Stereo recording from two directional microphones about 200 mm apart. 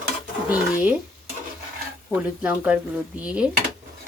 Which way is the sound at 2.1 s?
5° right (ahead or behind).